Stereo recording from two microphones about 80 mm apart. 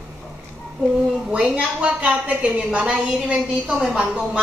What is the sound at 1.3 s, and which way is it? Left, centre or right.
Speech, centre.